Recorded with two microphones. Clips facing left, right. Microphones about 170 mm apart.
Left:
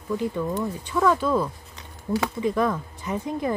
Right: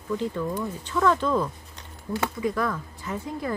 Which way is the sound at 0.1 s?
15° left (ahead or behind).